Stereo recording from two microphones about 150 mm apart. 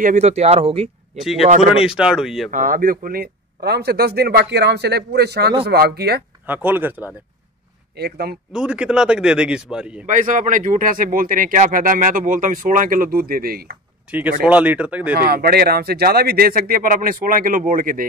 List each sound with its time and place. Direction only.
0.0 s speech: 50° right (ahead or behind)
1.1 s a man's voice: centre (ahead or behind)
2.5 s speech: 65° right (ahead or behind); by 6.2 s 90° right
6.4 s speech: 10° right (ahead or behind)
8.0 s speech: 90° right
8.5 s a man's voice: 5° right (ahead or behind)
10.0 s speech: 60° right (ahead or behind); by 13.7 s 80° right
14.4 s speech: 10° right (ahead or behind)
15.1 s speech: 90° right; by 18.0 s 65° right (ahead or behind)